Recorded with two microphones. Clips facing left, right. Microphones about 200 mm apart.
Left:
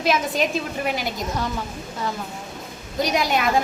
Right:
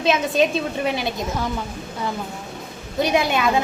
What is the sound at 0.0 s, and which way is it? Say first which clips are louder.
Speech: right 3 dB; 25° right (ahead or behind).